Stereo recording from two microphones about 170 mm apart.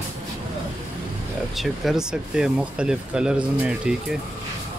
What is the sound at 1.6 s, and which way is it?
Speech, centre (ahead or behind).